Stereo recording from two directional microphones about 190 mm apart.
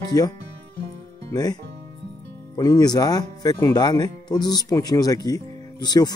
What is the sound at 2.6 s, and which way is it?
Speech, 20° left (ahead or behind).